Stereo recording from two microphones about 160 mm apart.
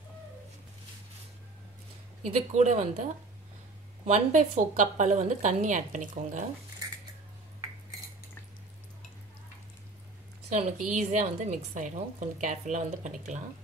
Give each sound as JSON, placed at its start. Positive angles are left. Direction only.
{"t": 2.5, "sound": "a woman's voice", "side_deg": -45}
{"t": 10.5, "sound": "a woman's voice", "side_deg": -50}